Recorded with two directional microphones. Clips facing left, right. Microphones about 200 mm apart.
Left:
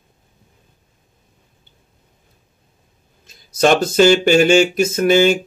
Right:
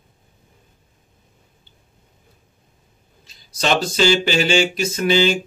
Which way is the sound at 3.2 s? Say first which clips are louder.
Left 7 dB; 50° left (ahead or behind).